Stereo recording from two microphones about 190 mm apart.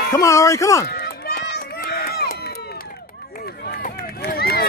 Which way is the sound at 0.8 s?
55° left (ahead or behind).